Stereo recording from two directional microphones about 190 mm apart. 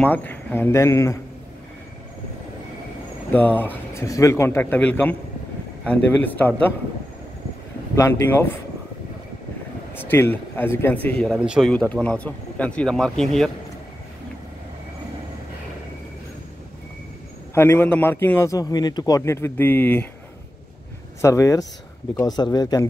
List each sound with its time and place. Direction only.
0.0 s a man's voice: 10° left (ahead or behind)
3.3 s a man's voice: 10° left (ahead or behind)
7.9 s a man's voice: 15° left (ahead or behind)
9.9 s a man's voice: 10° left (ahead or behind)
11.2 s speech: 5° right (ahead or behind)
11.7 s speech: 5° left (ahead or behind)
17.6 s a man's voice: 10° left (ahead or behind)
21.2 s a man's voice: 15° left (ahead or behind)